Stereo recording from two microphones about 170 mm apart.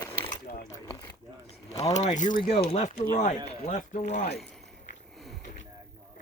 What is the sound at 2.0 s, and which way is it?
Speech, 45° left (ahead or behind).